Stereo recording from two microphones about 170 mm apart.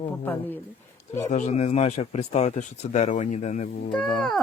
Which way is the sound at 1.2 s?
45° left (ahead or behind).